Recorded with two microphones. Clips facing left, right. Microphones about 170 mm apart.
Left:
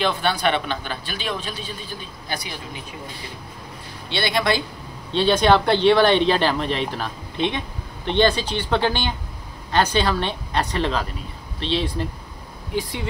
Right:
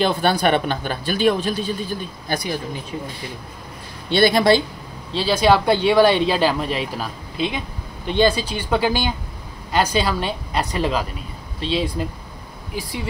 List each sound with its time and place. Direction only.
0.0 s speech: 40° right (ahead or behind)
4.1 s speech: 40° right (ahead or behind)
5.1 s speech: 5° right (ahead or behind)